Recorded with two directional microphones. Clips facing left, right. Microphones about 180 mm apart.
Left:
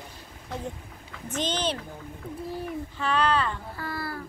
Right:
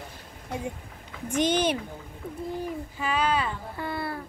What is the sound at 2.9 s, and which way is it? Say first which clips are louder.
Speech: left 2 dB; 10° right (ahead or behind).